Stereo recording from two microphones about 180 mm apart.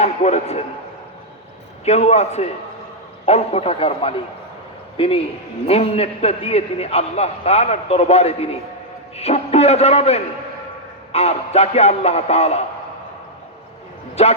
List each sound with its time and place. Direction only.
0.0 s a man's voice: 40° left (ahead or behind)
1.8 s a man's voice: 35° left (ahead or behind)
14.2 s a man's voice: 35° left (ahead or behind)